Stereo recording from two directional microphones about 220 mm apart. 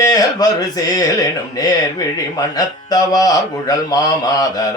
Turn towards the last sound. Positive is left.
turn(degrees=15)  # may be behind; listen again after turning